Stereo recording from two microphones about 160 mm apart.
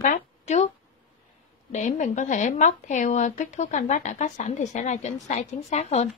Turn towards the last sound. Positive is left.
turn(degrees=45)  # may be behind; listen again after turning